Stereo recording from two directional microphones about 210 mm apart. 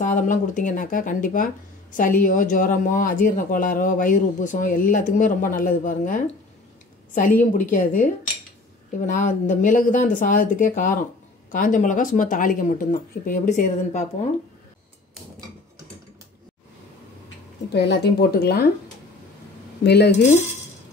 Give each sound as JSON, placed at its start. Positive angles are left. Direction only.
{"t": 0.0, "sound": "speech", "side_deg": 35}
{"t": 17.7, "sound": "a woman's voice", "side_deg": 50}
{"t": 19.8, "sound": "a woman's voice", "side_deg": 50}